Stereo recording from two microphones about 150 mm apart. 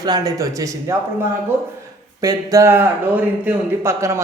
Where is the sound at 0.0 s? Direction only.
25° right (ahead or behind).